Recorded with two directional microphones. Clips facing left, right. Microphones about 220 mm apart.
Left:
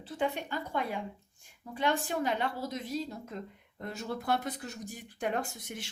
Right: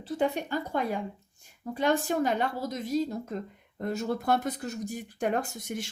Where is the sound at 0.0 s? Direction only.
40° right (ahead or behind).